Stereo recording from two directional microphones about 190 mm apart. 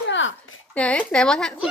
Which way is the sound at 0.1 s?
80° left.